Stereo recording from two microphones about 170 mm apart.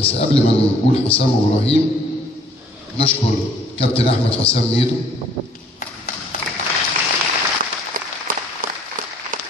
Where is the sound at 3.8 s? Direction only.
35° left (ahead or behind).